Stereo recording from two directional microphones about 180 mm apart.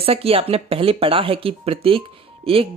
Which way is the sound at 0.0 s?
30° right (ahead or behind).